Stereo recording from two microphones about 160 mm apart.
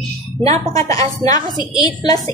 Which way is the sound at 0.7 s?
20° left (ahead or behind).